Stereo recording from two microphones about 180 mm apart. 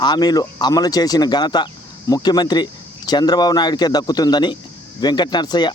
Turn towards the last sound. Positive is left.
turn(degrees=25)  # may be behind; listen again after turning